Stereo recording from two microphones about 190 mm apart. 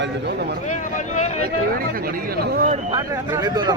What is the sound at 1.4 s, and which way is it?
Speech, 50° right (ahead or behind).